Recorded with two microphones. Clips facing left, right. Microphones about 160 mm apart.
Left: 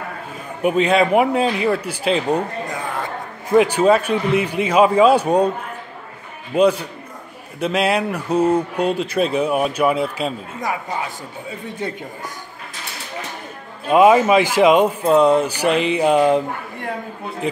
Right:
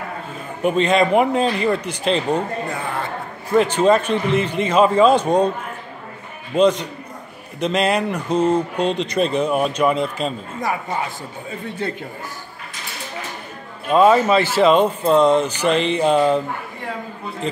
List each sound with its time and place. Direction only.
0.6 s speech: 5° left (ahead or behind)
3.4 s speech: 10° left (ahead or behind)
6.5 s speech: 10° left (ahead or behind)
11.8 s speech: 15° left (ahead or behind)
13.8 s speech: 10° left (ahead or behind)